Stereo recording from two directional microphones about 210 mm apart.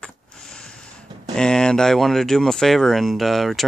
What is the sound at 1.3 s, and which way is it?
Speech, 5° left (ahead or behind).